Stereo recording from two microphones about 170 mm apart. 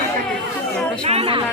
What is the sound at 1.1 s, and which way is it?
Music, 35° right (ahead or behind).